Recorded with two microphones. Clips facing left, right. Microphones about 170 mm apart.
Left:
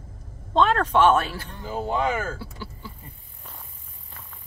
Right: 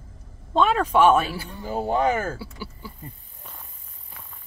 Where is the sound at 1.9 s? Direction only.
40° right (ahead or behind).